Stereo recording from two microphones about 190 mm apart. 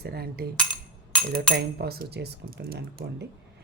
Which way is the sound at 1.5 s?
55° right (ahead or behind).